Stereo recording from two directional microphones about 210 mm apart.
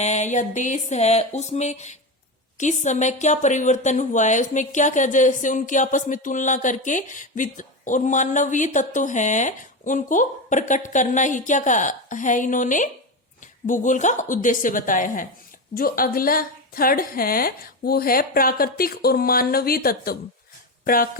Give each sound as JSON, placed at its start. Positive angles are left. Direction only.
{"t": 0.0, "sound": "a woman's voice", "side_deg": 35}